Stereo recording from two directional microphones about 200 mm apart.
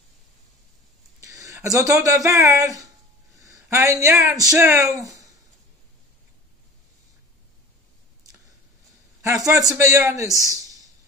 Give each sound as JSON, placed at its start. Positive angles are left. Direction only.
{"t": 1.2, "sound": "a sound", "side_deg": -15}
{"t": 2.0, "sound": "a woman's voice", "side_deg": -15}
{"t": 9.2, "sound": "speech", "side_deg": -15}